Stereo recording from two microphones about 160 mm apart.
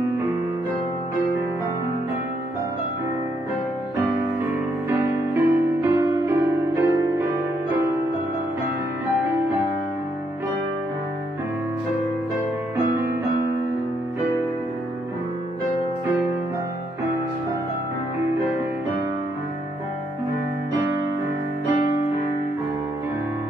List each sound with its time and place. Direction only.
4.8 s music: 15° right (ahead or behind)